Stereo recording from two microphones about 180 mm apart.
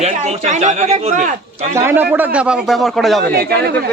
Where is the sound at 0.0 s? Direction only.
40° right (ahead or behind).